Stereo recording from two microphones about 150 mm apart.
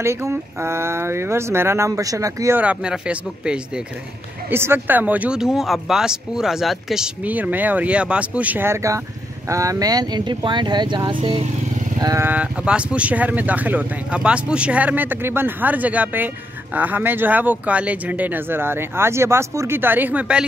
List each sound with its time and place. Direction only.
0.0 s speech: 15° right (ahead or behind)
2.6 s speech: 5° right (ahead or behind); by 11.4 s 35° right (ahead or behind)
12.0 s speech: 25° right (ahead or behind)
12.3 s speech: 10° right (ahead or behind)